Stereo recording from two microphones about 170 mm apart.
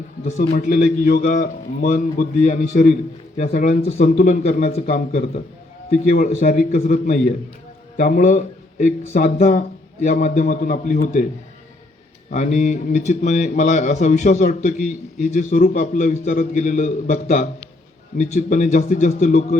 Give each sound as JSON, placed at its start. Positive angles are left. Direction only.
{"t": 0.5, "sound": "a man's voice", "side_deg": 55}
{"t": 1.2, "sound": "a man's voice", "side_deg": 45}
{"t": 12.3, "sound": "a man's voice", "side_deg": 45}